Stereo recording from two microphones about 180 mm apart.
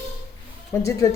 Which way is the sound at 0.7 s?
10° left (ahead or behind).